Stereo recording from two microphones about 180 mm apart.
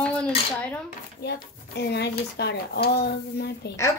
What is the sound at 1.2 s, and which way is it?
Speech, 65° left (ahead or behind).